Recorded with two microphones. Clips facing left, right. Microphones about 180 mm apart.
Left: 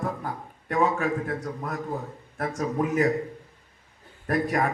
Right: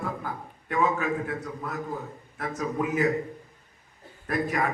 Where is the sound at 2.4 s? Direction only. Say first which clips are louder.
Left 2 dB; 45° left (ahead or behind).